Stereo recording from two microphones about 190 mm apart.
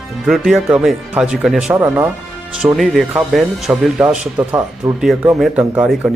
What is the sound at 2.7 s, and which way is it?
Speech, centre (ahead or behind).